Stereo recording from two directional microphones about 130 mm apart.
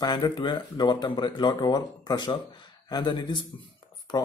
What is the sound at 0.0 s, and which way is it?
Speech, 35° left (ahead or behind).